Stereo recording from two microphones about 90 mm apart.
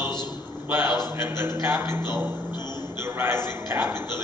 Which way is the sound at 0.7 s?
25° right (ahead or behind).